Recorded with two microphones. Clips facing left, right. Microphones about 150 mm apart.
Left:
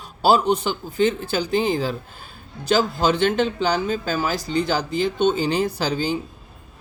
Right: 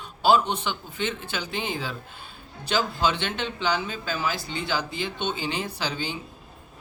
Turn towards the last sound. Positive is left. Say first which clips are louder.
# left 8 dB
turn(degrees=40)  # may be behind; listen again after turning